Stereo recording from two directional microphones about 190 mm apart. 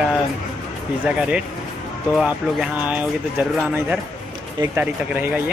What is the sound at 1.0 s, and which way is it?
Speech, 5° right (ahead or behind).